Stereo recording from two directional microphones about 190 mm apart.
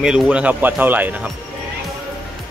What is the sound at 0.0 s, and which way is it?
Speech, 5° right (ahead or behind).